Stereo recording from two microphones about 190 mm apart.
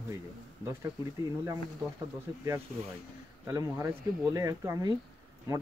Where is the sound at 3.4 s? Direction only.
15° right (ahead or behind).